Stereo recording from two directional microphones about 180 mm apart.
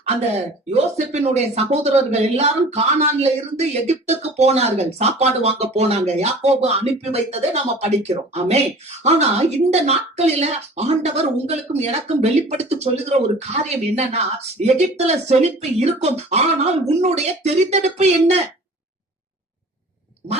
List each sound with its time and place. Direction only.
0.0 s speech: 35° right (ahead or behind)